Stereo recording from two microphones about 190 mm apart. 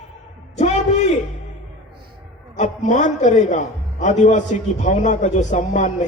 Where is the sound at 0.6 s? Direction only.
35° left (ahead or behind).